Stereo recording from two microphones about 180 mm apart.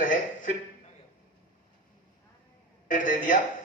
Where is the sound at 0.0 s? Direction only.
50° left (ahead or behind).